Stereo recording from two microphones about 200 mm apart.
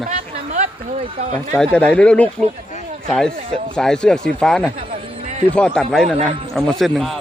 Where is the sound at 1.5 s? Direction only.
5° left (ahead or behind).